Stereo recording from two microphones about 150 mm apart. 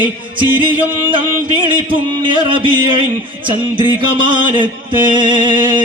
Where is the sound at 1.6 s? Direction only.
35° right (ahead or behind).